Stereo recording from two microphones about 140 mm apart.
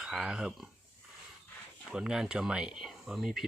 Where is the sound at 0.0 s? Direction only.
5° right (ahead or behind).